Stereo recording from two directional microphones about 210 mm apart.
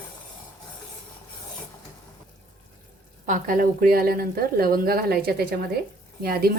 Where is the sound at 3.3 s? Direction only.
40° right (ahead or behind).